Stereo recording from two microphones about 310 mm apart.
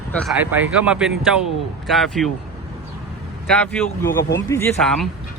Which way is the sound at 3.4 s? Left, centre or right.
Centre.